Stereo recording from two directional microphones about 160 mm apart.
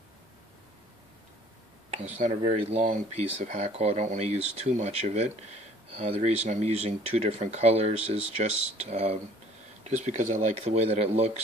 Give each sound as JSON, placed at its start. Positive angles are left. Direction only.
{"t": 2.0, "sound": "speech", "side_deg": -45}